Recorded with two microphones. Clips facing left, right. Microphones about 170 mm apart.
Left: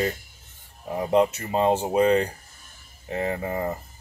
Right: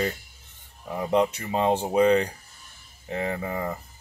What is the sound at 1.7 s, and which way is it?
Speech, 5° left (ahead or behind).